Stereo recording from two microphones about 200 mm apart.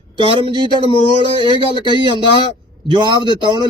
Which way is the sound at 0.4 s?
25° right (ahead or behind).